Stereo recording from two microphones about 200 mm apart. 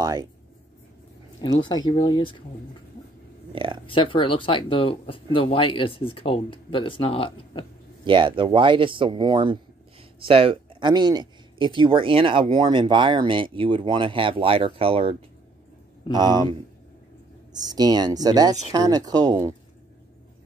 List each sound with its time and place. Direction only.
0.0 s writing: 20° right (ahead or behind)
1.4 s speech: 20° left (ahead or behind)
3.8 s speech: 25° left (ahead or behind)
8.0 s speech: 25° right (ahead or behind)